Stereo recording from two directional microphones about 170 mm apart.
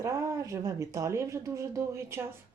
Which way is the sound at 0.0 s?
20° right (ahead or behind).